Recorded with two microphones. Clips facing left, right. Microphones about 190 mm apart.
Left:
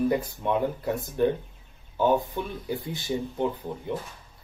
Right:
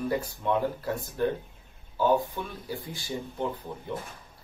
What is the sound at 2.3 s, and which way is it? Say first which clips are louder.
Speech: left 4 dB; 20° left (ahead or behind).